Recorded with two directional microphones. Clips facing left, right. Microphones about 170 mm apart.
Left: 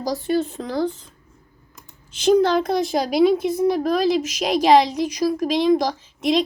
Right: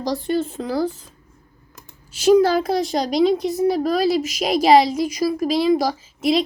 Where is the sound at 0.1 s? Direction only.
Centre (ahead or behind).